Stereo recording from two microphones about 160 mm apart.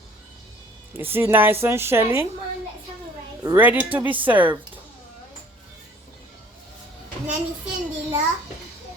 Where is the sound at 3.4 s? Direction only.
10° right (ahead or behind).